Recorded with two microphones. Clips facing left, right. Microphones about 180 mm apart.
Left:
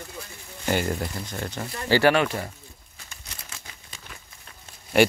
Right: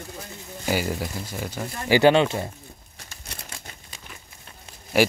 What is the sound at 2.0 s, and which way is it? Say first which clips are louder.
Speech: right 4 dB; 25° right (ahead or behind).